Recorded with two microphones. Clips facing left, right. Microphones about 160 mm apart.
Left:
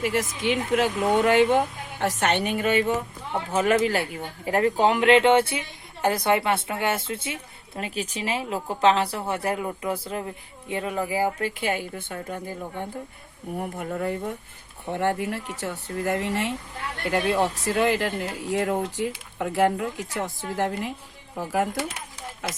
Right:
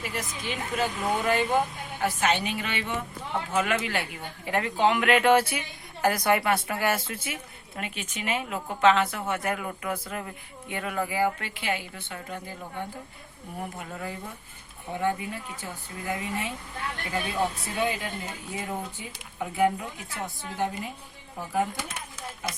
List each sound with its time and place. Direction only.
0.0 s speech: 90° left; by 12.4 s 45° left (ahead or behind)
13.7 s speech: 55° left (ahead or behind)
14.9 s speech: 75° left (ahead or behind)